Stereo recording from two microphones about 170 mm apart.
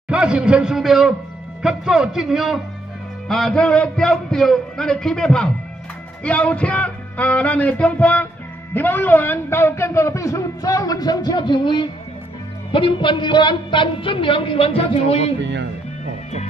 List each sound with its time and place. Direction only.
0.1 s a man's voice: 5° right (ahead or behind)
6.2 s music: 5° left (ahead or behind)
8.7 s a man's voice: 10° left (ahead or behind); by 15.3 s 35° left (ahead or behind)
15.4 s speech: 90° right